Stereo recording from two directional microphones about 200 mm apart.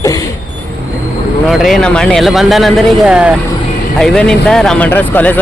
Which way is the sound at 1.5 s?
Centre (ahead or behind).